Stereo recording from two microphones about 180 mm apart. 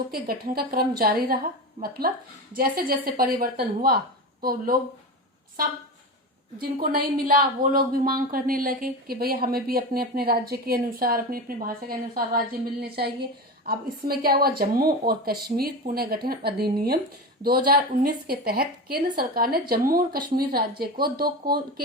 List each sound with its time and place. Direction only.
0.1 s speech: 55° right (ahead or behind)
6.6 s speech: 55° right (ahead or behind)